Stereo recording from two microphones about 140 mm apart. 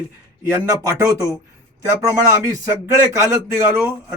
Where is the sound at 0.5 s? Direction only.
25° right (ahead or behind).